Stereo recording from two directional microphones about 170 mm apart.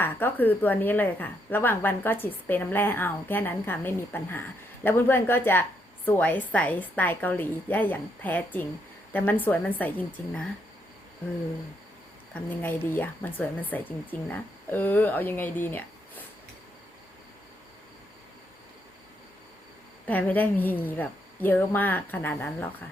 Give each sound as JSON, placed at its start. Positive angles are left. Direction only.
{"t": 0.0, "sound": "a woman's voice", "side_deg": 10}
{"t": 12.3, "sound": "a woman's voice", "side_deg": 10}
{"t": 20.1, "sound": "a woman's voice", "side_deg": 10}